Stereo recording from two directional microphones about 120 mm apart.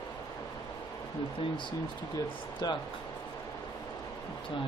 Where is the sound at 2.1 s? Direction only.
35° left (ahead or behind).